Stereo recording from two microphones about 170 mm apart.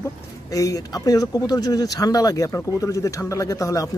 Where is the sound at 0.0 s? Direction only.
20° left (ahead or behind).